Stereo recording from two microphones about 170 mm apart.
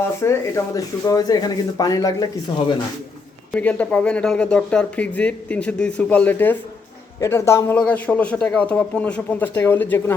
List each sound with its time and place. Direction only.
0.2 s speech: 20° left (ahead or behind)
3.5 s speech: 10° left (ahead or behind)